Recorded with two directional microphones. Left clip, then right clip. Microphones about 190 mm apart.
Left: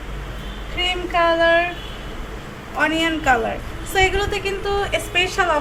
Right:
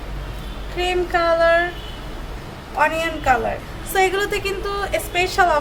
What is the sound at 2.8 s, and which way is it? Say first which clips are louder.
A woman's voice: even; 25° right (ahead or behind).